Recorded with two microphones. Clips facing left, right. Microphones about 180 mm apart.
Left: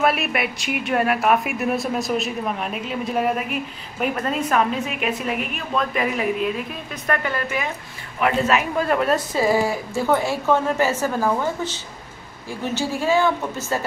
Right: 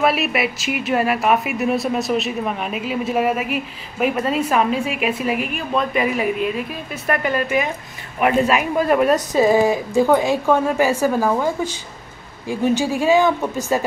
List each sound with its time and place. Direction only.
0.0 s speech: centre (ahead or behind)
7.1 s speech: 15° right (ahead or behind)